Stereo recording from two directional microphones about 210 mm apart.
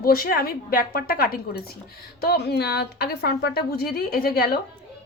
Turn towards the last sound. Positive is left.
turn(degrees=45)  # may be behind; listen again after turning